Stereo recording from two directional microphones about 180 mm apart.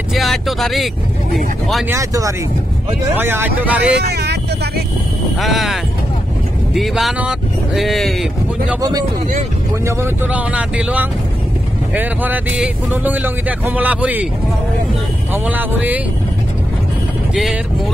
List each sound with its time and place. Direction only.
0.1 s vehicle: centre (ahead or behind)
1.3 s speech: centre (ahead or behind)
1.9 s speech: 15° right (ahead or behind)
3.9 s vehicle: 65° right (ahead or behind)
5.4 s speech: centre (ahead or behind)
9.8 s speech: 15° right (ahead or behind)
15.3 s speech: 10° right (ahead or behind)
17.3 s speech: centre (ahead or behind)